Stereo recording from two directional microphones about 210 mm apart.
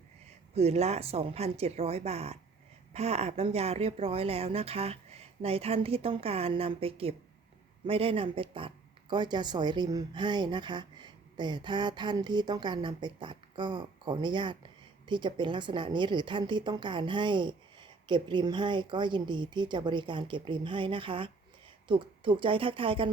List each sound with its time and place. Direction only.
0.5 s speech: 30° right (ahead or behind)